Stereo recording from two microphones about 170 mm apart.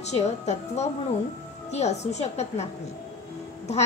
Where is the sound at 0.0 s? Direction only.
40° left (ahead or behind).